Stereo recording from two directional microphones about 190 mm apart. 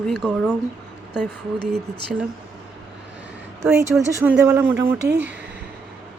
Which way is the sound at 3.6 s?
15° right (ahead or behind).